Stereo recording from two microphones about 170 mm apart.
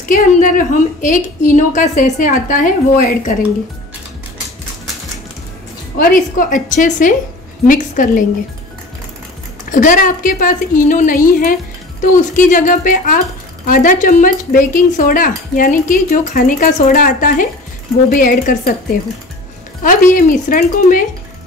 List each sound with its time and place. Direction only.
0.1 s speech: 50° left (ahead or behind)
5.9 s speech: 55° left (ahead or behind)
9.7 s a woman's voice: 50° left (ahead or behind)